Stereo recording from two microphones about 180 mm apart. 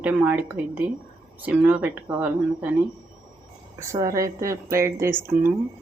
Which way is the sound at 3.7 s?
20° right (ahead or behind).